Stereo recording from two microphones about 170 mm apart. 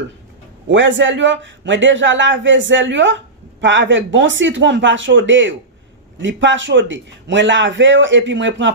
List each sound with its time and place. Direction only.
0.7 s a man's voice: 90° right